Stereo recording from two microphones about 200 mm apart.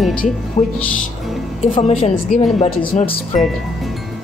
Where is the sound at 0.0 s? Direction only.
5° left (ahead or behind).